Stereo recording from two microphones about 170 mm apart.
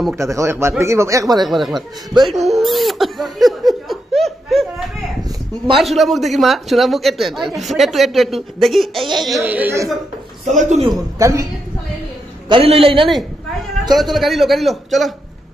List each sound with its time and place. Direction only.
0.1 s speech: 15° right (ahead or behind)
1.4 s speech: centre (ahead or behind)
2.1 s a woman's voice: 25° right (ahead or behind)
2.6 s speech: centre (ahead or behind)
9.4 s speech: 10° right (ahead or behind)
10.4 s a man's voice: 45° right (ahead or behind)
10.9 s a woman's voice: 20° right (ahead or behind)
12.4 s a man's voice: 35° right (ahead or behind)
13.9 s speech: centre (ahead or behind)